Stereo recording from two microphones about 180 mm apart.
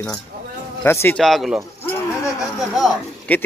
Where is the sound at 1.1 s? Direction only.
Centre (ahead or behind).